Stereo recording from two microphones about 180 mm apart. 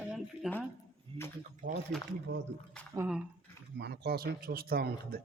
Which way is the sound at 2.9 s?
10° right (ahead or behind).